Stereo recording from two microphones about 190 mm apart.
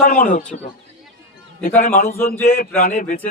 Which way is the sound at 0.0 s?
45° left (ahead or behind).